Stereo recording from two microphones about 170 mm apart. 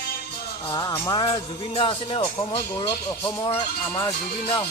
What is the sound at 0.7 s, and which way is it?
Speech, 20° left (ahead or behind).